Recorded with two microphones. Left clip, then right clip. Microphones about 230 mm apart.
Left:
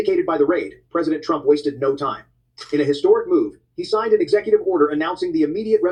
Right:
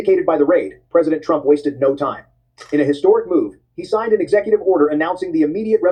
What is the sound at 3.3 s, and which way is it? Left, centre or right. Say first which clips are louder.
Speech: right 1 dB; right.